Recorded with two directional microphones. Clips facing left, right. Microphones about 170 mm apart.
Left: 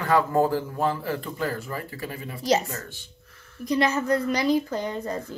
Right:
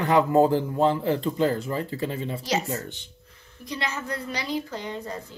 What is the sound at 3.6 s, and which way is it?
A woman's voice, 40° left (ahead or behind).